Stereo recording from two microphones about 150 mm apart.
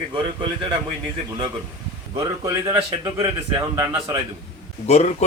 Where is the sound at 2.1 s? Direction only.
30° right (ahead or behind).